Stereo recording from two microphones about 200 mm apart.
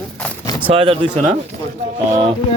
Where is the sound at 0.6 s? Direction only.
30° right (ahead or behind).